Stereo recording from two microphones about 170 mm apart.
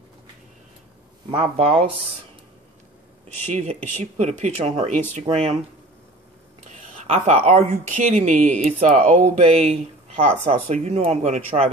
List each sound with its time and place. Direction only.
1.3 s speech: 35° right (ahead or behind)
3.5 s speech: 40° right (ahead or behind)
7.1 s speech: 40° right (ahead or behind)